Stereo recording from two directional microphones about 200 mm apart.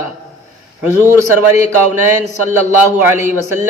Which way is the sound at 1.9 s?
35° left (ahead or behind).